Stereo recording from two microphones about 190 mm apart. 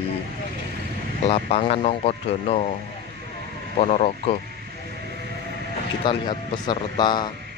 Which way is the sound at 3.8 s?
35° left (ahead or behind).